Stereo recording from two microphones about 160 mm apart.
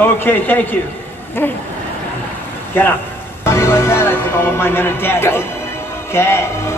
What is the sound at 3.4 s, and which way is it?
Music, 15° left (ahead or behind).